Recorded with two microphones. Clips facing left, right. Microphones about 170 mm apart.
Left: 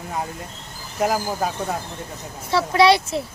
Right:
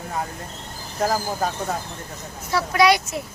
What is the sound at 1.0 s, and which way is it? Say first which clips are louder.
Speech: left 1 dB; 10° left (ahead or behind).